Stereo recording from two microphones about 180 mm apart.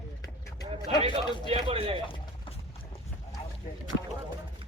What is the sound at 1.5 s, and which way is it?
Speech, 30° right (ahead or behind).